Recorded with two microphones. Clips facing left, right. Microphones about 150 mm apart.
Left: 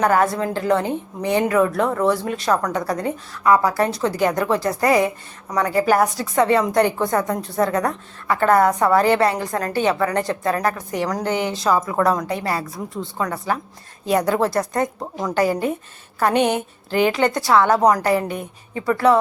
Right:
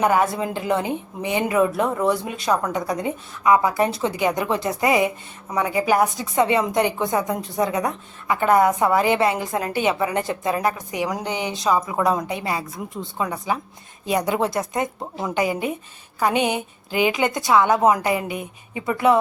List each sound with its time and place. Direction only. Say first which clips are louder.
0.2 s a woman's voice: left 2 dB; 5° right (ahead or behind)
3.0 s a woman's voice: left 1 dB; 20° right (ahead or behind)
6.5 s speech: left 3 dB; 5° right (ahead or behind)
7.1 s a woman's voice: left 2 dB; 15° right (ahead or behind)
7.7 s speech: left 2 dB; centre (ahead or behind)
8.3 s a woman's voice: left 1 dB; 15° right (ahead or behind)